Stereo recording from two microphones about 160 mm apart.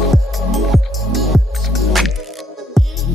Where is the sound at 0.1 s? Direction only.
Centre (ahead or behind).